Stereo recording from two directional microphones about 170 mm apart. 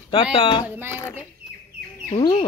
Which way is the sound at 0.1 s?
30° left (ahead or behind).